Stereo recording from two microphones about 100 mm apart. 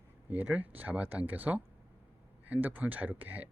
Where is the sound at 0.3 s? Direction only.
15° right (ahead or behind).